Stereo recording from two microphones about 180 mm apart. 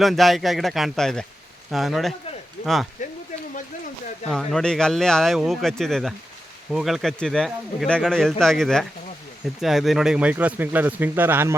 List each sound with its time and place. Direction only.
0.0 s speech: centre (ahead or behind)
3.0 s a sound: 45° left (ahead or behind)
4.3 s speech: 5° left (ahead or behind)